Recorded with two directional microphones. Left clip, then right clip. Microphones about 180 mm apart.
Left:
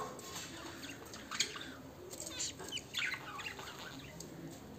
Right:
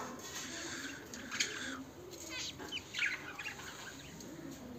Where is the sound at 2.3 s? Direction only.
70° left (ahead or behind).